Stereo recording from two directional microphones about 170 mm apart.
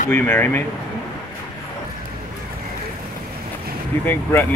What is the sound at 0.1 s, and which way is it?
Speech, 10° left (ahead or behind).